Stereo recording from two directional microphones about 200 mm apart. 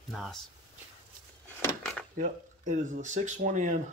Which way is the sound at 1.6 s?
10° left (ahead or behind).